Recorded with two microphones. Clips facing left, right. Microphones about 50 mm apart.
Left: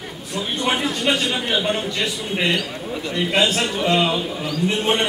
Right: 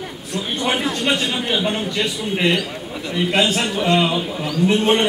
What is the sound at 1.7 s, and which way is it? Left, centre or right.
A man's voice, centre.